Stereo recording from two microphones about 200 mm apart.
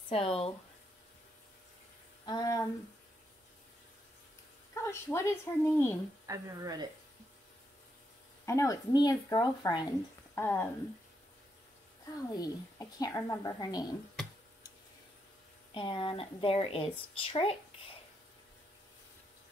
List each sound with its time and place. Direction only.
0.1 s a woman's voice: 30° left (ahead or behind)
2.2 s a woman's voice: 20° left (ahead or behind)
4.8 s a woman's voice: 15° left (ahead or behind)
6.2 s a woman's voice: 15° right (ahead or behind)
8.5 s a woman's voice: 15° left (ahead or behind)
12.2 s a woman's voice: 20° left (ahead or behind)
15.7 s a woman's voice: 25° left (ahead or behind)